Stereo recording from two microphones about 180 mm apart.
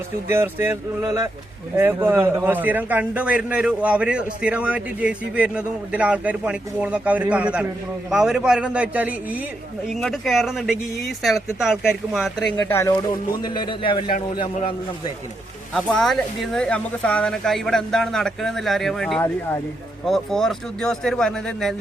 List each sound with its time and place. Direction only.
0.3 s a man's voice: 15° right (ahead or behind); by 12.7 s 5° left (ahead or behind)
12.7 s speech: 15° left (ahead or behind)
13.4 s a man's voice: 25° left (ahead or behind)
15.7 s speech: 5° left (ahead or behind)